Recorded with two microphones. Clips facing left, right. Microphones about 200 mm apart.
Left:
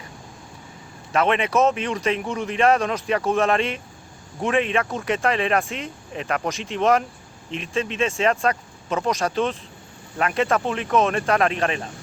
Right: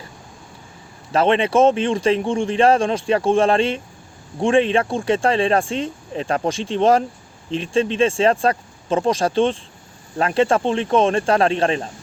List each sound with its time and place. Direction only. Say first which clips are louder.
1.1 s a man's voice: right 4 dB; 30° right (ahead or behind)